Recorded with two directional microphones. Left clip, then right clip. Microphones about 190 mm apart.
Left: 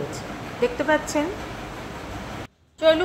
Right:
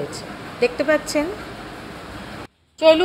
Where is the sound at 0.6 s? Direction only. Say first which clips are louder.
Right 3 dB; 15° right (ahead or behind).